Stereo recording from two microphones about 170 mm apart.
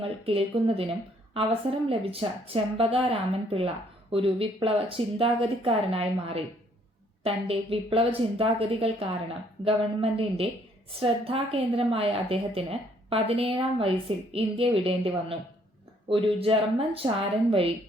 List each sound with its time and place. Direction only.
0.0 s speech: 35° right (ahead or behind)
1.9 s speech: 35° right (ahead or behind)